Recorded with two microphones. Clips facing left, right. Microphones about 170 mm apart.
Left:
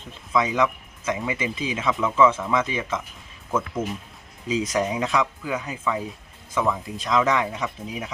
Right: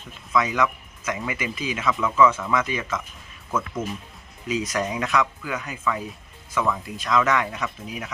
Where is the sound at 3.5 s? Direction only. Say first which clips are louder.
Left 2 dB; 10° left (ahead or behind).